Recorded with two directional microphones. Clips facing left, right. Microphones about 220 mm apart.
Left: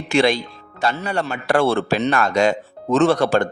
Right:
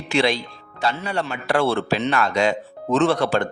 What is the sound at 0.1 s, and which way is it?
A man's voice, 50° left (ahead or behind).